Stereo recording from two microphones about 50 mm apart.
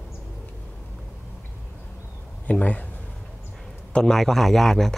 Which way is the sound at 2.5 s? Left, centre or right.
Left.